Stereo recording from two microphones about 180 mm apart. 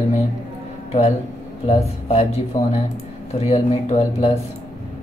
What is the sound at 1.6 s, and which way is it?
Speech, 35° left (ahead or behind).